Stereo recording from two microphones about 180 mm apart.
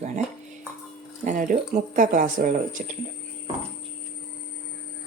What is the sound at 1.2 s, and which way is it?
Speech, 45° right (ahead or behind).